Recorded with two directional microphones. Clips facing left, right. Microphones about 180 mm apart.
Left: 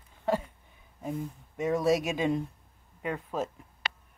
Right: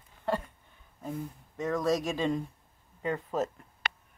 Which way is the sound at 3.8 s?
55° right (ahead or behind).